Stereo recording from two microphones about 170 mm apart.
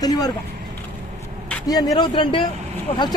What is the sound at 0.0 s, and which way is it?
Speech, 20° left (ahead or behind).